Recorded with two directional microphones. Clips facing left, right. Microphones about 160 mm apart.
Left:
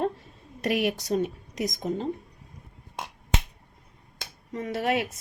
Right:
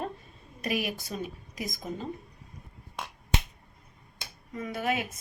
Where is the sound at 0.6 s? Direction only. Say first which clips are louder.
Left 6 dB; 70° left (ahead or behind).